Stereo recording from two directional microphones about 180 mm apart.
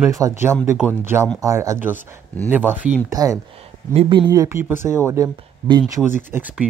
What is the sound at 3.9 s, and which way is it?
Speech, 30° right (ahead or behind).